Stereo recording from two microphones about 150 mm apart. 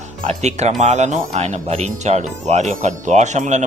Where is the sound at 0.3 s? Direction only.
45° right (ahead or behind).